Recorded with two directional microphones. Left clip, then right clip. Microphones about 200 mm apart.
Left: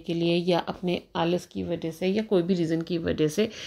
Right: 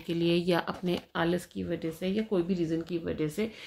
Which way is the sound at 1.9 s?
35° left (ahead or behind).